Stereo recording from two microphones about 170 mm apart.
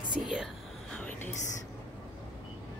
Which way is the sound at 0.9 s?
5° left (ahead or behind).